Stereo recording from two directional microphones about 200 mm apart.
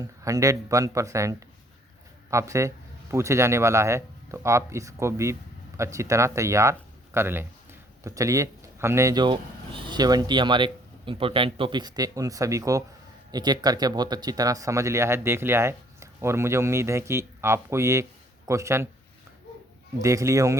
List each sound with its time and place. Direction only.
0.0 s speech: 15° right (ahead or behind)
20.0 s speech: 15° right (ahead or behind)